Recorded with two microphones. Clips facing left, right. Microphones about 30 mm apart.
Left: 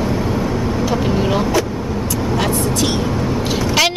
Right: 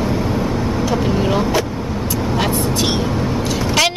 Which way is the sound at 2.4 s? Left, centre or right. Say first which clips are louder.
Even; centre.